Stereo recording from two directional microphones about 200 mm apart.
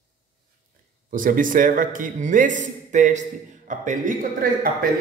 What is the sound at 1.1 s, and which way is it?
A man's voice, 40° right (ahead or behind).